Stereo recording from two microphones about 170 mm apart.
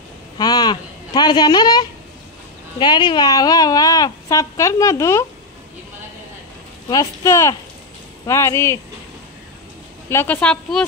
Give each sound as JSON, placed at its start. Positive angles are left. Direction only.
{"t": 0.4, "sound": "speech", "side_deg": 25}
{"t": 6.9, "sound": "speech", "side_deg": 20}
{"t": 10.0, "sound": "speech", "side_deg": 10}